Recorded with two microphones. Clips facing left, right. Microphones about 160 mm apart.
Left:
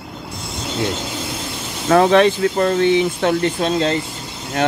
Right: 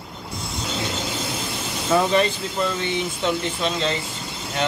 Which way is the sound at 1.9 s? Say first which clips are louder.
Left 7 dB; 75° left (ahead or behind).